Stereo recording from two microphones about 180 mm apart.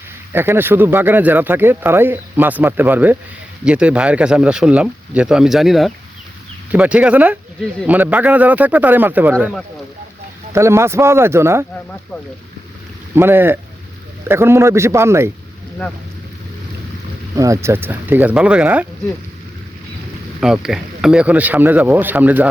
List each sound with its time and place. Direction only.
0.3 s speech: 15° right (ahead or behind)
10.5 s speech: 15° right (ahead or behind)
13.1 s speech: 10° right (ahead or behind)
17.3 s speech: 20° right (ahead or behind)
20.4 s speech: centre (ahead or behind)